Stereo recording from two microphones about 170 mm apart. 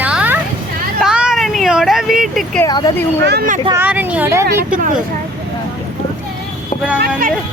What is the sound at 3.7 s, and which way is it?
Speech, 10° right (ahead or behind).